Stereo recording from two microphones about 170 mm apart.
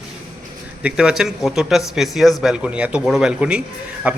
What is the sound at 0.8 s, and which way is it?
A man's voice, 5° right (ahead or behind).